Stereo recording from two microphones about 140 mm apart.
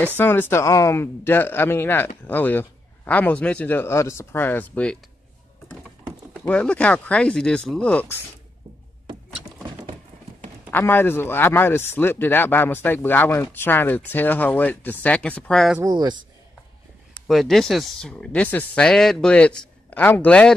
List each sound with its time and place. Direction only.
0.2 s speech: 15° left (ahead or behind)
6.3 s speech: 5° left (ahead or behind)
10.7 s speech: 15° left (ahead or behind)
15.8 s speech: 30° right (ahead or behind)
17.3 s speech: centre (ahead or behind)